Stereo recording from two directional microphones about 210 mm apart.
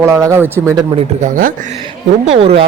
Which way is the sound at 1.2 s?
40° right (ahead or behind).